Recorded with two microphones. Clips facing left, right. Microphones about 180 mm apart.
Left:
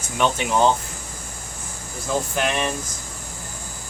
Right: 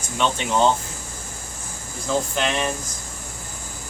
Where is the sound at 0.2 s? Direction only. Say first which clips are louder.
Left 1 dB; 10° left (ahead or behind).